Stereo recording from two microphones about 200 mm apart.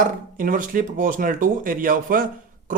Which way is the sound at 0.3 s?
40° right (ahead or behind).